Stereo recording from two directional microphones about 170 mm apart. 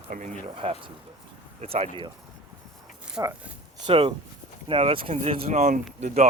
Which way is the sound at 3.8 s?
35° right (ahead or behind).